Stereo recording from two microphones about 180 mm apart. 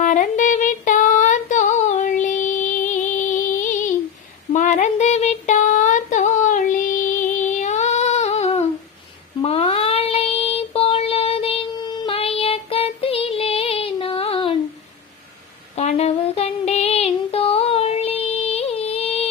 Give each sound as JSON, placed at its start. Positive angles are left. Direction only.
{"t": 0.0, "sound": "female singing", "side_deg": 45}
{"t": 7.4, "sound": "child singing", "side_deg": 40}
{"t": 15.7, "sound": "a sound", "side_deg": 40}